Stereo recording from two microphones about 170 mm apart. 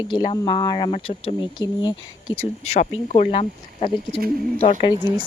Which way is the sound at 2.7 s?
40° left (ahead or behind).